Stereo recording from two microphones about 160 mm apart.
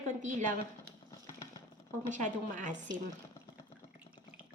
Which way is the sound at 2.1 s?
55° right (ahead or behind).